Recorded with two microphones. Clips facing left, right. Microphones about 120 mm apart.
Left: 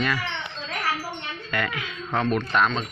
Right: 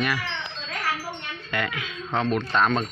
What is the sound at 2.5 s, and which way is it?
Speech, 45° right (ahead or behind).